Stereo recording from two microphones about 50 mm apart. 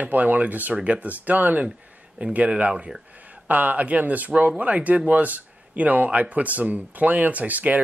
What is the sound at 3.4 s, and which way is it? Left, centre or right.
Speech, right.